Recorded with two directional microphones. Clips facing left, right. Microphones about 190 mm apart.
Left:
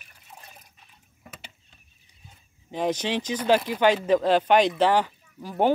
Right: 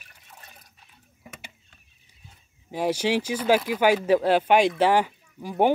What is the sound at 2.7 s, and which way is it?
Speech, 10° right (ahead or behind).